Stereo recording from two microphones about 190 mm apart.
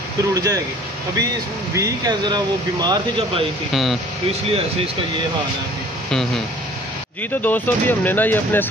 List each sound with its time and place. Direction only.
0.3 s speech: 20° right (ahead or behind)
1.8 s speech: 20° right (ahead or behind)
3.7 s speech: centre (ahead or behind)
4.3 s speech: 30° right (ahead or behind)
6.0 s speech: centre (ahead or behind)
7.4 s speech: 10° left (ahead or behind)